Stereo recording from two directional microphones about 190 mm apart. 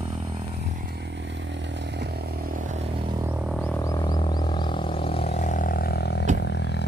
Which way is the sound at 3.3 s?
10° right (ahead or behind).